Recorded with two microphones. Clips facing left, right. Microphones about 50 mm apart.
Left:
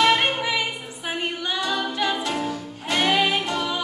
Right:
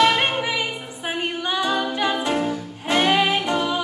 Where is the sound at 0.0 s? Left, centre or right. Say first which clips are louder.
Right 1 dB; centre.